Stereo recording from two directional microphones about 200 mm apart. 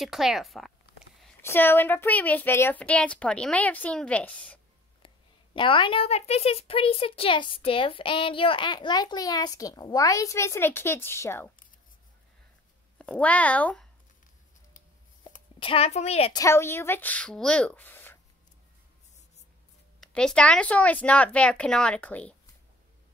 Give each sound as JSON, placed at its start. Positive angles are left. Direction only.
{"t": 0.0, "sound": "speech", "side_deg": 0}
{"t": 1.4, "sound": "speech", "side_deg": 10}
{"t": 5.0, "sound": "a woman's voice", "side_deg": 25}
{"t": 13.0, "sound": "speech", "side_deg": 5}
{"t": 15.6, "sound": "a child's voice", "side_deg": 30}
{"t": 16.3, "sound": "speech", "side_deg": 15}
{"t": 20.0, "sound": "speech", "side_deg": 5}